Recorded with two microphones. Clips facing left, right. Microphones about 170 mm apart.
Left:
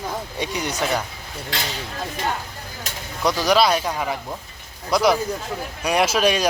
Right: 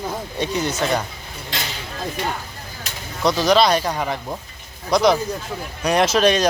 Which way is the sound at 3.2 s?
10° left (ahead or behind).